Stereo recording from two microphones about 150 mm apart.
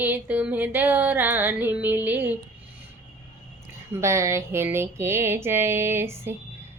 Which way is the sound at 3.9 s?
20° right (ahead or behind).